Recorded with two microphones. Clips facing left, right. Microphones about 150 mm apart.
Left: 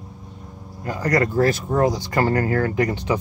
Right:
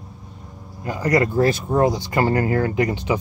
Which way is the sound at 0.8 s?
15° right (ahead or behind).